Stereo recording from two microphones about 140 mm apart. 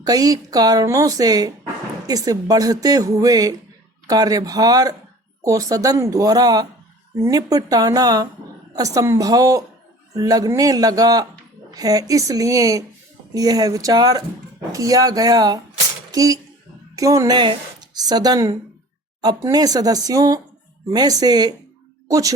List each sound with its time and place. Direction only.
0.0 s a woman's voice: 25° right (ahead or behind)